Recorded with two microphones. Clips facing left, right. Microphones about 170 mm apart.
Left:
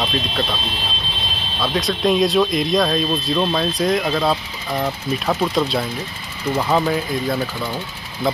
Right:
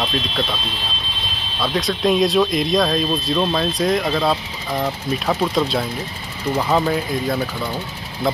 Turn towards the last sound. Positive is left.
turn(degrees=0)  # may be behind; listen again after turning